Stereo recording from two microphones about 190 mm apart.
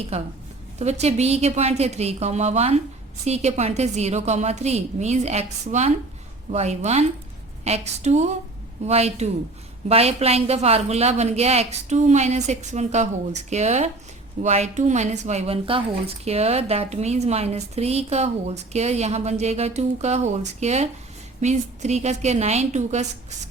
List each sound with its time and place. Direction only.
0.1 s speech: 30° right (ahead or behind)